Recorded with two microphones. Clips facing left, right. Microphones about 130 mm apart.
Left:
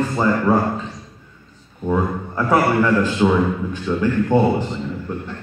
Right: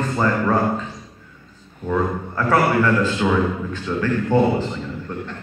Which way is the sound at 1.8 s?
15° left (ahead or behind).